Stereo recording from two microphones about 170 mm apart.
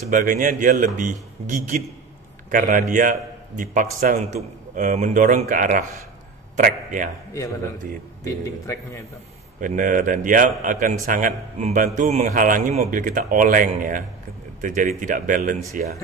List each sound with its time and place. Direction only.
0.1 s a man's voice: 50° right (ahead or behind)
8.2 s a man's voice: 15° left (ahead or behind)
9.6 s speech: 50° right (ahead or behind)